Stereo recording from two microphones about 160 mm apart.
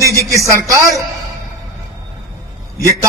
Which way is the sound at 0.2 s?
20° right (ahead or behind).